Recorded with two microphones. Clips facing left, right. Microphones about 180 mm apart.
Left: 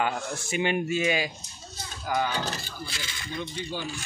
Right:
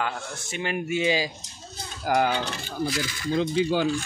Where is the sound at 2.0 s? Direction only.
75° right (ahead or behind).